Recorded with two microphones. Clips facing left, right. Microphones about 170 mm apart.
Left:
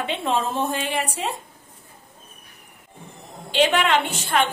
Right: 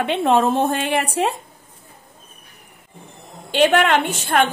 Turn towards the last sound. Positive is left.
turn(degrees=-50)  # may be behind; listen again after turning